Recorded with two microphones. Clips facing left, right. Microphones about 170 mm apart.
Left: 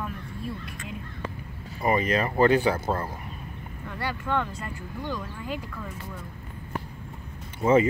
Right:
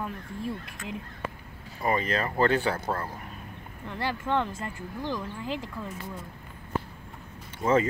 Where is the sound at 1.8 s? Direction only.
15° left (ahead or behind).